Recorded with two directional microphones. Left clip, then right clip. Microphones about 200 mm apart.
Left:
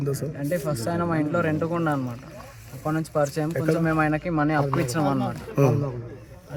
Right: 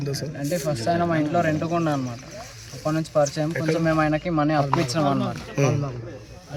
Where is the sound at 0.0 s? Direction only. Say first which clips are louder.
Left 1 dB; 55° left (ahead or behind).